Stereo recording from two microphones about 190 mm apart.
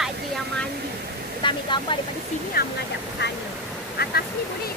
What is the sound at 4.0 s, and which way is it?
Speech, 55° left (ahead or behind).